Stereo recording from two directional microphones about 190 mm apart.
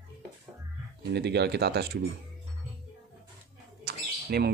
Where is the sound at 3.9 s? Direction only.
55° right (ahead or behind).